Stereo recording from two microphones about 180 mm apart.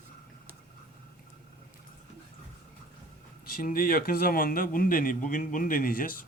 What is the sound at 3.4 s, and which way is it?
Speech, 55° left (ahead or behind).